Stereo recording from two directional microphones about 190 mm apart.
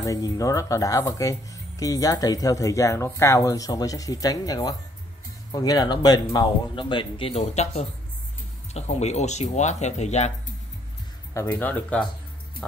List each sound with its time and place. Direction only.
0.0 s speech: 20° left (ahead or behind); by 10.3 s 35° left (ahead or behind)
11.3 s speech: 10° left (ahead or behind)